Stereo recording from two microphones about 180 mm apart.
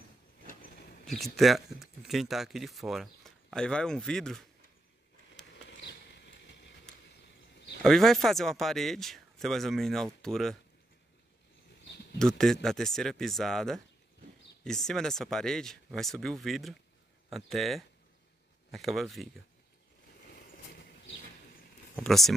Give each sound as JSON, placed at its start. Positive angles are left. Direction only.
{"t": 1.0, "sound": "speech", "side_deg": 0}
{"t": 5.7, "sound": "a sound", "side_deg": 75}
{"t": 7.8, "sound": "speech", "side_deg": 0}
{"t": 12.2, "sound": "speech", "side_deg": 0}
{"t": 21.9, "sound": "speech", "side_deg": 0}